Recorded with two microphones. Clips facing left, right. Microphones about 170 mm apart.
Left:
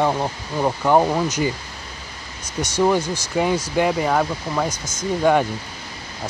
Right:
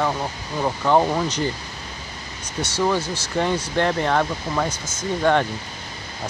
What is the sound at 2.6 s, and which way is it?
Speech, 15° left (ahead or behind).